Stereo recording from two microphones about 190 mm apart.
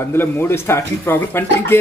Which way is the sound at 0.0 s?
10° left (ahead or behind).